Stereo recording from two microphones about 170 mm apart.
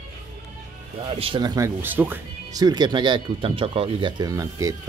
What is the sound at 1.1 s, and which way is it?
Speech, 35° right (ahead or behind).